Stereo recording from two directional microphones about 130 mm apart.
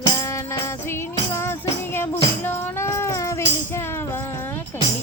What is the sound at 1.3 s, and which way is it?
Music, 20° left (ahead or behind).